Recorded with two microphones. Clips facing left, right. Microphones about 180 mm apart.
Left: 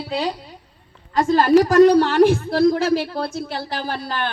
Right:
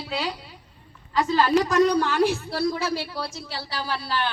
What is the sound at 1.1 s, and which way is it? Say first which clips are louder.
Speech: left 6 dB; 50° left (ahead or behind).